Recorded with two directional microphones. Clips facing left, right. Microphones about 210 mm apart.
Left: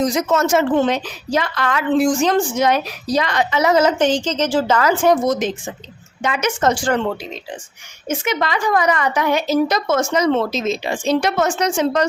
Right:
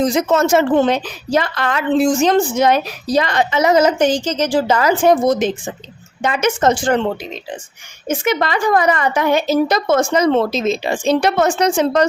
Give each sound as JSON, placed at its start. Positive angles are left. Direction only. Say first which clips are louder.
{"t": 0.0, "sound": "a woman's voice", "louder": "right 3 dB", "side_deg": -30}
{"t": 5.2, "sound": "a woman's voice", "louder": "right 3 dB", "side_deg": -30}
{"t": 6.6, "sound": "a woman's voice", "louder": "right 1 dB", "side_deg": -20}